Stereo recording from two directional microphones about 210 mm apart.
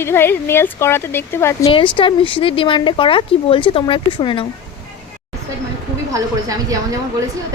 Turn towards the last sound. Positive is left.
turn(degrees=-15)  # may be behind; listen again after turning